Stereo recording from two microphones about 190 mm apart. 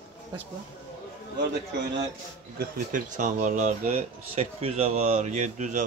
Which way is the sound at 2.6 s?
45° right (ahead or behind).